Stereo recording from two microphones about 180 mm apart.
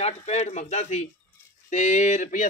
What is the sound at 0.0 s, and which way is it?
A man's voice, 35° left (ahead or behind).